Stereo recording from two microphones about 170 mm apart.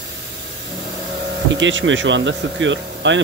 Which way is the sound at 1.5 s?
90° right.